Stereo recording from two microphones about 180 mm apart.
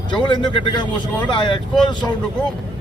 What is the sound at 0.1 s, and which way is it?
Speech, 25° left (ahead or behind).